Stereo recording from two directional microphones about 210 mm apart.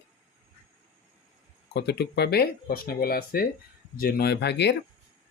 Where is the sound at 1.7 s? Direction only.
50° left (ahead or behind).